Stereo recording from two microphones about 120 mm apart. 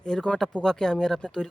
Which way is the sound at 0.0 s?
5° left (ahead or behind).